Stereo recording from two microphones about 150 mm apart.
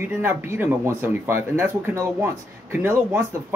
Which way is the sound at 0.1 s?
15° right (ahead or behind).